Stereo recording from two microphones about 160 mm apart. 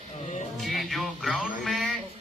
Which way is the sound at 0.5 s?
Centre (ahead or behind).